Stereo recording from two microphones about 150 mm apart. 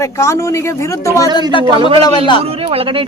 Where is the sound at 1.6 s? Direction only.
35° right (ahead or behind).